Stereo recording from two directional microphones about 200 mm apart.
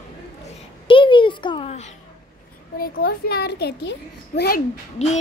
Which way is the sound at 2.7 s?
50° left (ahead or behind).